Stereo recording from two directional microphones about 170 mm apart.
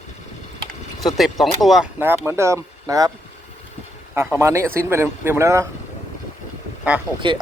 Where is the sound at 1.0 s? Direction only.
Centre (ahead or behind); by 3.1 s 20° right (ahead or behind).